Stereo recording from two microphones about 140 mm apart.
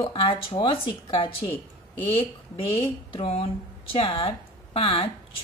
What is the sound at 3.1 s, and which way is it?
A woman's voice, 40° left (ahead or behind).